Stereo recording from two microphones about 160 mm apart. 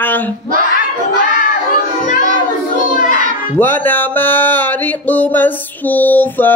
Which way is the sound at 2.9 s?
55° left (ahead or behind).